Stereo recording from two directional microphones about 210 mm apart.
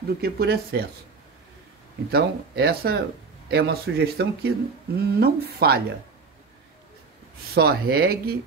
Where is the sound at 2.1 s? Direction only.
50° right (ahead or behind).